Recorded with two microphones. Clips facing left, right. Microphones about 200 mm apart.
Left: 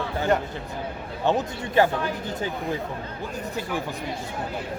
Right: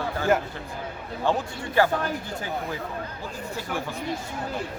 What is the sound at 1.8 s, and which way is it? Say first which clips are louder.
Speech: left 2 dB; 20° left (ahead or behind).